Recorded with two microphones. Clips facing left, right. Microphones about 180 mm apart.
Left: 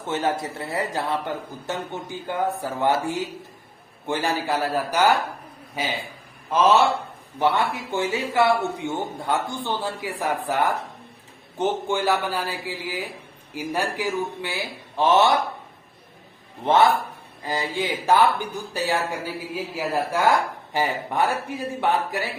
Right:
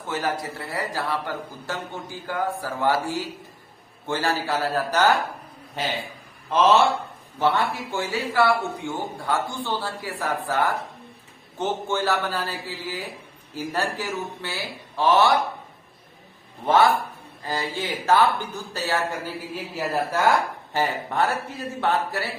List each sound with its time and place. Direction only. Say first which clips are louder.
0.0 s speech: left 2 dB; 25° left (ahead or behind)
16.6 s speech: left 1 dB; 25° left (ahead or behind)